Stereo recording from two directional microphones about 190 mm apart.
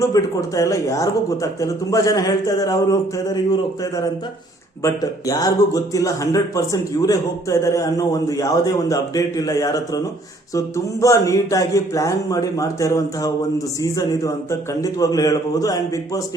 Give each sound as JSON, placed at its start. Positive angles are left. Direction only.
{"t": 0.0, "sound": "a man's voice", "side_deg": 15}
{"t": 11.0, "sound": "a man's voice", "side_deg": 15}